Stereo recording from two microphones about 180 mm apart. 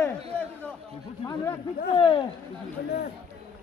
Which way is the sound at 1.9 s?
30° left (ahead or behind).